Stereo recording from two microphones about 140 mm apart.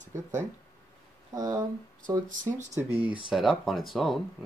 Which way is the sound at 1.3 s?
25° right (ahead or behind).